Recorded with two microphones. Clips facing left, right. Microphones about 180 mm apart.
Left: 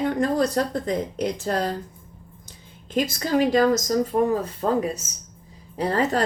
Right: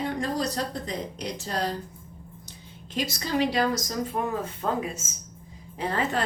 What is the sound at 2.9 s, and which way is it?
A woman's voice, 50° left (ahead or behind).